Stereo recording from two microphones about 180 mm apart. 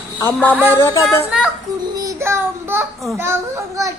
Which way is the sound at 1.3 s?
5° right (ahead or behind).